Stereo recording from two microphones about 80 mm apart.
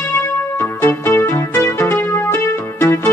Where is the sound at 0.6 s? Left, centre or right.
Left.